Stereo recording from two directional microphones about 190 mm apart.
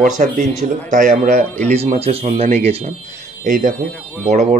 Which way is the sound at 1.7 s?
35° right (ahead or behind).